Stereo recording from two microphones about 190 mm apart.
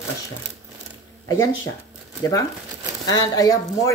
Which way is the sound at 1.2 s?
20° left (ahead or behind).